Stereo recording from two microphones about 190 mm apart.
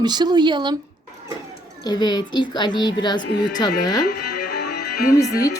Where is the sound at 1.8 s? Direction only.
20° left (ahead or behind).